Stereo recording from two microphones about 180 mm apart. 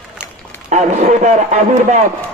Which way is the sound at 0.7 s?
40° right (ahead or behind).